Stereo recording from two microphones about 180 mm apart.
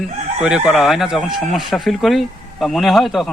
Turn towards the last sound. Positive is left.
turn(degrees=0)  # may be behind; listen again after turning